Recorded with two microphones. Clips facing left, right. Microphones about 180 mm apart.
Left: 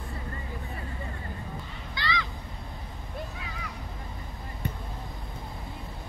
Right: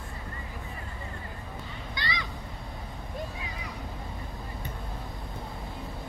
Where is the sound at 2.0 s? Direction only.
20° right (ahead or behind).